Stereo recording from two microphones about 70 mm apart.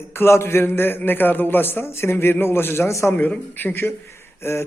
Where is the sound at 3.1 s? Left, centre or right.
Left.